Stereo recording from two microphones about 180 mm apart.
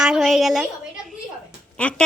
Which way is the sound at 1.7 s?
5° left (ahead or behind).